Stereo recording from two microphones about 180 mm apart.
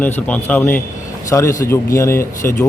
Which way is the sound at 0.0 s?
10° left (ahead or behind).